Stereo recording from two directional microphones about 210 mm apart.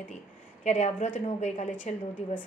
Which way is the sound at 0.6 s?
35° left (ahead or behind).